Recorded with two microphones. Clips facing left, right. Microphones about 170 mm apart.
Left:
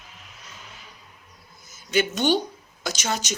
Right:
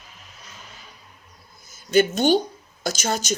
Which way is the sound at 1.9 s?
50° right (ahead or behind).